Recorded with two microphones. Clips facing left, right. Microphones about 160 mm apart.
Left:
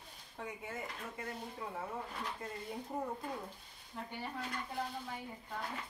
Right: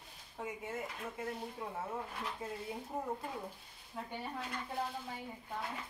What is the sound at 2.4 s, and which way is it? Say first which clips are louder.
Speech: right 3 dB; 5° right (ahead or behind).